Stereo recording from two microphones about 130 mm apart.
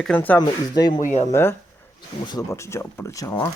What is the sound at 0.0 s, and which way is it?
Speech, 10° left (ahead or behind).